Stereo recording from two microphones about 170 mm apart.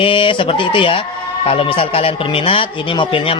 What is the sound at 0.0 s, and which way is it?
A man's voice, 30° left (ahead or behind).